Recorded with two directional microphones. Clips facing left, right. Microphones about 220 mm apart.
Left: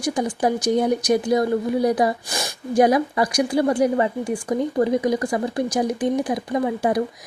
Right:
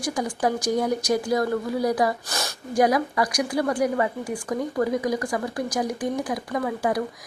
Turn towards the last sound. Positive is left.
turn(degrees=25)  # may be behind; listen again after turning